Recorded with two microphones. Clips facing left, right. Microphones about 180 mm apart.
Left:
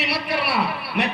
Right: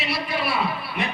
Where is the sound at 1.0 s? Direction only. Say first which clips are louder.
Left 5 dB; 70° left (ahead or behind).